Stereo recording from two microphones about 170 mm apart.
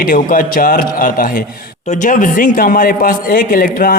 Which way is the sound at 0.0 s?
55° left (ahead or behind).